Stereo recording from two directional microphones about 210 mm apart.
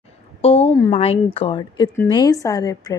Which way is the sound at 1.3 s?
25° left (ahead or behind).